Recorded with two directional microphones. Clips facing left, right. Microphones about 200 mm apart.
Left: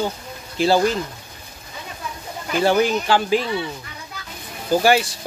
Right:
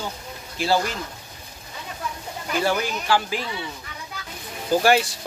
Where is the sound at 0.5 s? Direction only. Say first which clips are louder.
Left 5 dB; 25° left (ahead or behind).